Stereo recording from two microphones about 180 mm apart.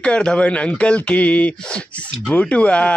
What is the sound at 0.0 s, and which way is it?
Speech, 5° left (ahead or behind).